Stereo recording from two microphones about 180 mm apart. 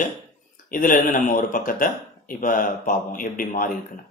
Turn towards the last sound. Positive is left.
turn(degrees=50)  # may be behind; listen again after turning